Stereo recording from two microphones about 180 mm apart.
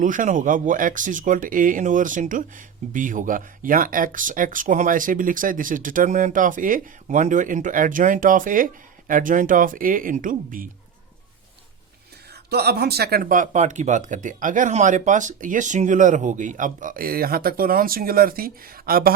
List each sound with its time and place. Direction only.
0.0 s speech: 45° right (ahead or behind)
12.3 s speech: 65° right (ahead or behind)